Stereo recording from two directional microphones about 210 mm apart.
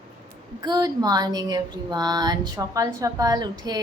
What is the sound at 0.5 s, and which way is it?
Speech, 20° right (ahead or behind).